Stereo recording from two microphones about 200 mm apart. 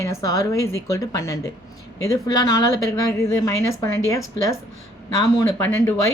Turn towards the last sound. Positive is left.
turn(degrees=15)  # may be behind; listen again after turning